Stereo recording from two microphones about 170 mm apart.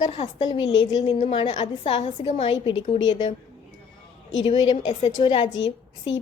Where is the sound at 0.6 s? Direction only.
90° left.